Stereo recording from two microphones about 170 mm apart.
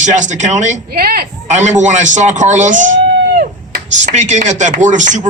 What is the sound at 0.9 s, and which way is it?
Speech, 60° right (ahead or behind).